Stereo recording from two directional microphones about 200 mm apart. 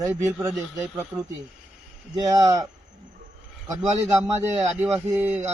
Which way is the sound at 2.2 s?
20° right (ahead or behind).